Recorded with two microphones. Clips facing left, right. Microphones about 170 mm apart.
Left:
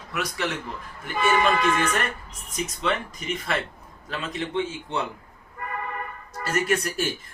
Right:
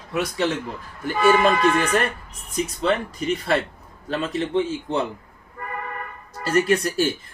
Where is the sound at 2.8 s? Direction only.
35° right (ahead or behind).